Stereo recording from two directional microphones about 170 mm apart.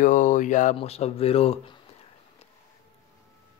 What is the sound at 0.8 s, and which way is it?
Speech, 35° left (ahead or behind).